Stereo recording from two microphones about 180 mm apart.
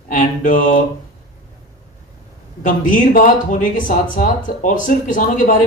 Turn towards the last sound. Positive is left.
turn(degrees=45)  # may be behind; listen again after turning